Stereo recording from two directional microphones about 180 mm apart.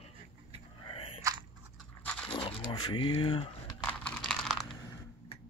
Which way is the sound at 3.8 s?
5° left (ahead or behind).